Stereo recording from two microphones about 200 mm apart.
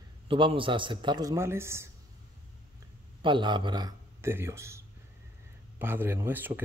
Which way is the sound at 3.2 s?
25° right (ahead or behind).